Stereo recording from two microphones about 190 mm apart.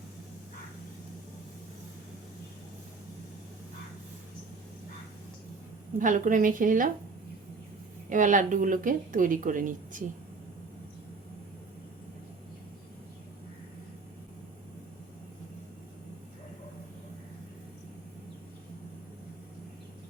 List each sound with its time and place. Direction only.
6.0 s speech: 45° right (ahead or behind)
8.1 s speech: 45° right (ahead or behind)